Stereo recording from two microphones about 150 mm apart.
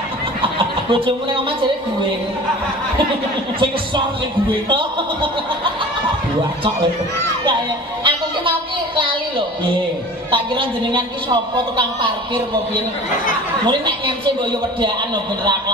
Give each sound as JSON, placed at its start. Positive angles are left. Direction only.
{"t": 0.9, "sound": "a woman's voice", "side_deg": -35}
{"t": 4.6, "sound": "a woman's voice", "side_deg": -35}
{"t": 8.0, "sound": "a sound", "side_deg": -35}
{"t": 10.3, "sound": "a woman's voice", "side_deg": -35}
{"t": 13.7, "sound": "a woman's voice", "side_deg": -30}